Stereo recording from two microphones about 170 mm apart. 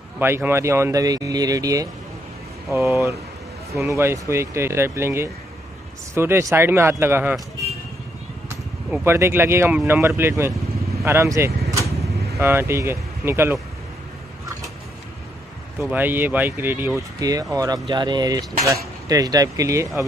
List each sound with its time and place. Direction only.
0.2 s speech: 15° right (ahead or behind)
8.9 s speech: 15° right (ahead or behind)
15.8 s speech: 10° right (ahead or behind)